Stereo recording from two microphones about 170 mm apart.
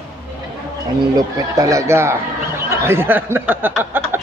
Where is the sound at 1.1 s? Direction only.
20° right (ahead or behind).